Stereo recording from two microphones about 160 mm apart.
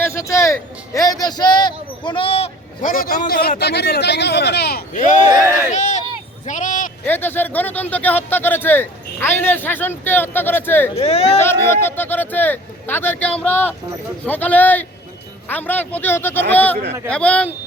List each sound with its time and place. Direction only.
0.0 s a man's voice: 15° left (ahead or behind); by 2.5 s 35° left (ahead or behind)
2.8 s a man's voice: 60° left (ahead or behind); by 4.8 s 90° left
4.9 s speech: 50° left (ahead or behind)
5.5 s speech: 15° right (ahead or behind)
5.7 s speech: 45° left (ahead or behind)
7.0 s speech: 10° left (ahead or behind)
10.9 s speech: 40° left (ahead or behind)
11.4 s speech: 15° left (ahead or behind)